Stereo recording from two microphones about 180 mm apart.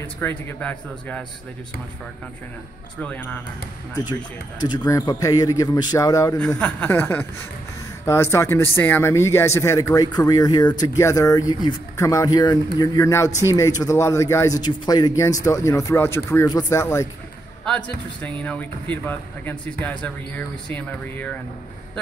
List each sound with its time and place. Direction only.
0.0 s speech: 10° left (ahead or behind)
3.0 s speech: 10° left (ahead or behind)
4.6 s speech: 20° left (ahead or behind)